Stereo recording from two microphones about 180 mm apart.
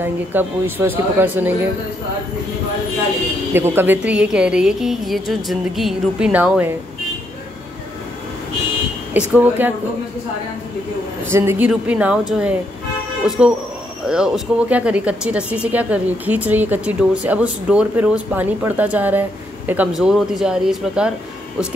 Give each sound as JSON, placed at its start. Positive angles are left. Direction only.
{"t": 0.0, "sound": "speech", "side_deg": -10}
{"t": 3.5, "sound": "a woman's voice", "side_deg": -10}
{"t": 9.1, "sound": "speech", "side_deg": -10}
{"t": 11.3, "sound": "a woman's voice", "side_deg": -10}